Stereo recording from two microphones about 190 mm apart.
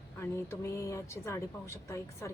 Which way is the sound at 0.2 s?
15° left (ahead or behind).